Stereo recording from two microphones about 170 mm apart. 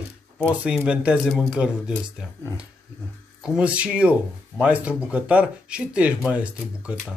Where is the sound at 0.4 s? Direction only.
10° right (ahead or behind).